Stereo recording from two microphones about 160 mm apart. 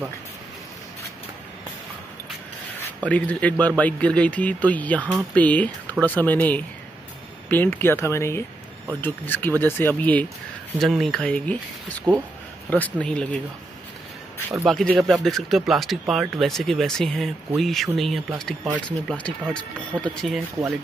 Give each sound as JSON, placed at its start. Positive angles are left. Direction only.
{"t": 3.0, "sound": "speech", "side_deg": 10}
{"t": 14.7, "sound": "speech", "side_deg": 0}